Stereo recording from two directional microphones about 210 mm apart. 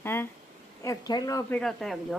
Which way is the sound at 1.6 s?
Centre (ahead or behind).